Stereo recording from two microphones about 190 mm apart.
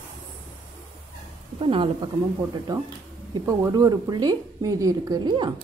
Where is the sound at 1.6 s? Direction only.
25° right (ahead or behind).